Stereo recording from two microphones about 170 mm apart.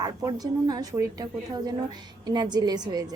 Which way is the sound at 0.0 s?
20° right (ahead or behind).